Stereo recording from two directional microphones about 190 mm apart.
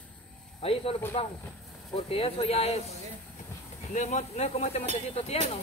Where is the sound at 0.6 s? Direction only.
30° left (ahead or behind).